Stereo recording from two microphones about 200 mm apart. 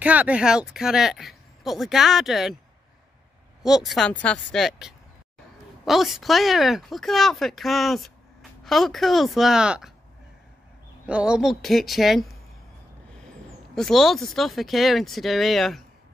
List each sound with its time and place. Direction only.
0.0 s a woman's voice: 5° right (ahead or behind)
3.6 s a woman's voice: centre (ahead or behind)
11.1 s a woman's voice: 5° right (ahead or behind)
13.7 s a woman's voice: centre (ahead or behind)